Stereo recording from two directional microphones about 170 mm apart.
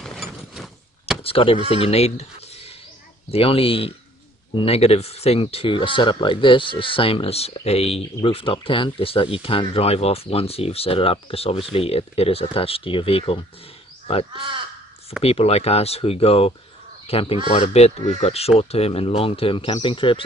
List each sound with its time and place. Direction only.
0.0 s a sound: centre (ahead or behind)
1.2 s speech: 35° left (ahead or behind)
15.2 s speech: 35° left (ahead or behind)